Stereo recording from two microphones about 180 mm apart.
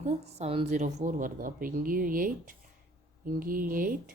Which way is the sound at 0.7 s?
45° right (ahead or behind).